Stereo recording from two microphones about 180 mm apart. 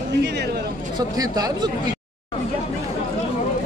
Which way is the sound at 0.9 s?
20° right (ahead or behind).